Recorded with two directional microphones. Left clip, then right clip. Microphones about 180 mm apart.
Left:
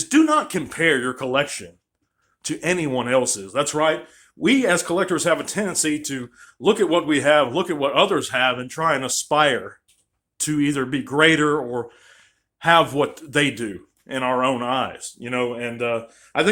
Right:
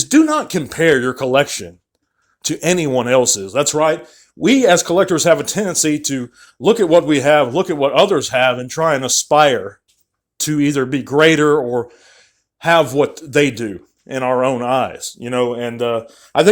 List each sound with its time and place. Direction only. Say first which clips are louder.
0.1 s speech: right 3 dB; 30° right (ahead or behind)